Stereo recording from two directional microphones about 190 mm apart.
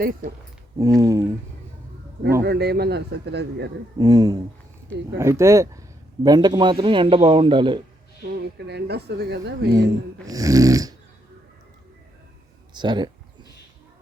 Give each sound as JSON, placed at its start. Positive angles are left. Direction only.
{"t": 0.0, "sound": "speech", "side_deg": -50}
{"t": 0.8, "sound": "speech", "side_deg": -15}
{"t": 2.4, "sound": "speech", "side_deg": -60}
{"t": 3.9, "sound": "a man's voice", "side_deg": -20}
{"t": 8.2, "sound": "speech", "side_deg": -60}
{"t": 10.2, "sound": "speech", "side_deg": -15}
{"t": 12.7, "sound": "speech", "side_deg": -25}